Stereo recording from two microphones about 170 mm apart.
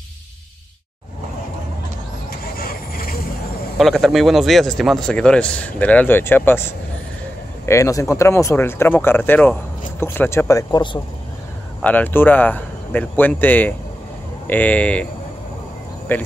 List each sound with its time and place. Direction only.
2.5 s vehicle: 60° left (ahead or behind)
3.7 s speech: centre (ahead or behind); by 11.0 s 25° left (ahead or behind)
11.8 s speech: 10° left (ahead or behind)
16.1 s speech: 10° left (ahead or behind)